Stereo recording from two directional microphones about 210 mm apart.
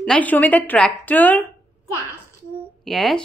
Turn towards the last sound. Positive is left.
turn(degrees=0)  # may be behind; listen again after turning